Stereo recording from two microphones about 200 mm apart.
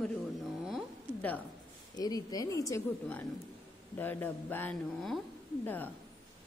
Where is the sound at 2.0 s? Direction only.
20° left (ahead or behind).